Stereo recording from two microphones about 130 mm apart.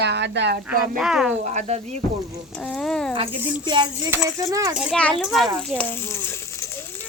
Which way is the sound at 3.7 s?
35° right (ahead or behind).